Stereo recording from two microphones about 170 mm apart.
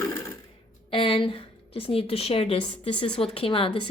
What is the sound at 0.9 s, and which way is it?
Speech, 35° left (ahead or behind).